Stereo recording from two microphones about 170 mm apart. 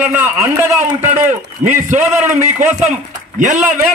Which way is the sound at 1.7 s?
45° right (ahead or behind).